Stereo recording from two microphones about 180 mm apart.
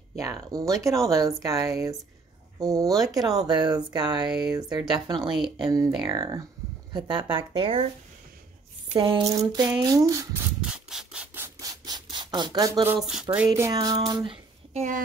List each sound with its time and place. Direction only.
0.2 s speech: 20° right (ahead or behind)
4.3 s speech: 5° right (ahead or behind)
4.6 s speech: 25° right (ahead or behind)
8.9 s speech: 25° right (ahead or behind)
10.6 s rub: 5° right (ahead or behind)
13.7 s speech: 20° right (ahead or behind); by 15.0 s 40° right (ahead or behind)